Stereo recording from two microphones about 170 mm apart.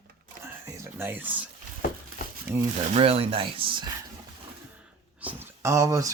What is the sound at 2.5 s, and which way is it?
Speech, 10° right (ahead or behind).